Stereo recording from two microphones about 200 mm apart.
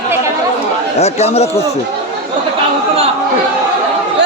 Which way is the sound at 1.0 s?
30° left (ahead or behind).